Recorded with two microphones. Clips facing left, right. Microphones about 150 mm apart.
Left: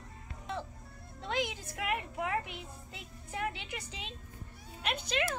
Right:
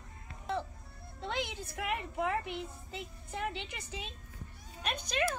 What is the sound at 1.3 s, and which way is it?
A woman's voice, 10° left (ahead or behind).